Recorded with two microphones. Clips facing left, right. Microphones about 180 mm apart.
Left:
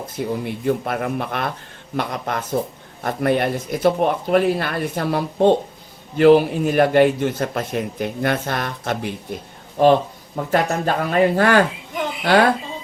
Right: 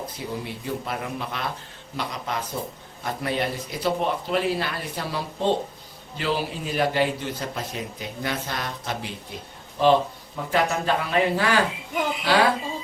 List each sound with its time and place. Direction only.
0.4 s a man's voice: 55° left (ahead or behind)